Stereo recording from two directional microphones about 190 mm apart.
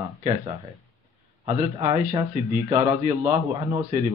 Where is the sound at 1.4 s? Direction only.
20° right (ahead or behind).